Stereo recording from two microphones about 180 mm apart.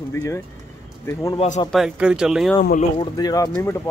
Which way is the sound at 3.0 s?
20° left (ahead or behind).